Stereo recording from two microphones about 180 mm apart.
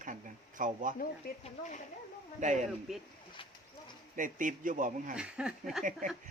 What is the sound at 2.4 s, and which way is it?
Speech, 40° right (ahead or behind).